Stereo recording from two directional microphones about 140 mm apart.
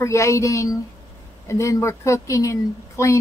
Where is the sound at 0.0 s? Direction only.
20° left (ahead or behind).